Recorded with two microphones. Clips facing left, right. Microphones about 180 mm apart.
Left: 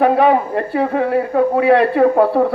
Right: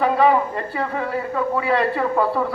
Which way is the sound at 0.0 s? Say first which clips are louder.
Left 4 dB; 60° left (ahead or behind).